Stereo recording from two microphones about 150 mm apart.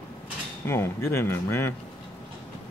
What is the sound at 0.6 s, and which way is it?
Speech, 15° left (ahead or behind).